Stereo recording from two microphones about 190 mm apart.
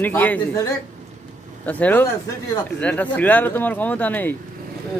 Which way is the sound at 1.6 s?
10° left (ahead or behind).